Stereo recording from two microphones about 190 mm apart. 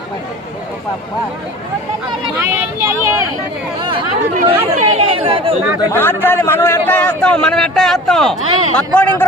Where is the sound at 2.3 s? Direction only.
10° right (ahead or behind).